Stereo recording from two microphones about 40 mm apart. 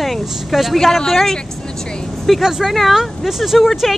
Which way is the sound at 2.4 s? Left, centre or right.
Centre.